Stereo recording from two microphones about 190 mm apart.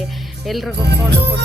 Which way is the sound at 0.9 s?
60° right (ahead or behind).